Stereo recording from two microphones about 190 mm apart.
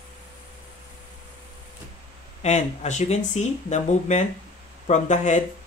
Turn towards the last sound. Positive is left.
turn(degrees=40)  # may be behind; listen again after turning